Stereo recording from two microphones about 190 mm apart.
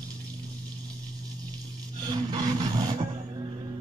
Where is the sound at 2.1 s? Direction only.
20° right (ahead or behind).